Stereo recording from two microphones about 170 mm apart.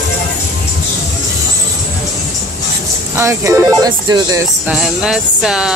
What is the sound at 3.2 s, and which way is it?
Speech, 15° right (ahead or behind).